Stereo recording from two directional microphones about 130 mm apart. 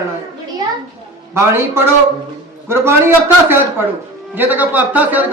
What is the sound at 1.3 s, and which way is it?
Speech, 20° right (ahead or behind).